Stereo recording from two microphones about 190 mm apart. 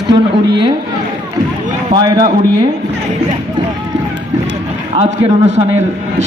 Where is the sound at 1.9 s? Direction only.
20° right (ahead or behind).